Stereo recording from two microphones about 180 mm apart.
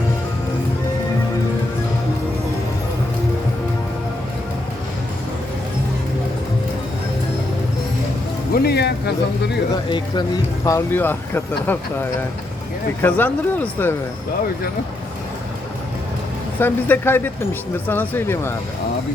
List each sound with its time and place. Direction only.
8.5 s speech: 65° left (ahead or behind)
9.9 s speech: 20° left (ahead or behind)
16.6 s speech: 10° left (ahead or behind)